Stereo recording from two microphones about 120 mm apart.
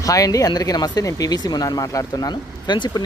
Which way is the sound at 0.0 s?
30° left (ahead or behind).